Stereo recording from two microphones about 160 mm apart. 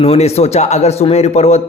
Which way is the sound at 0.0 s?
40° left (ahead or behind).